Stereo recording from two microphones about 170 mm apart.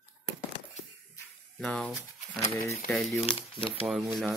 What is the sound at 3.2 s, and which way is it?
Speech, 30° left (ahead or behind).